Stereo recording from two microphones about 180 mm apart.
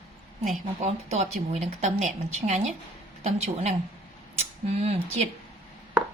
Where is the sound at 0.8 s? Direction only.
35° right (ahead or behind).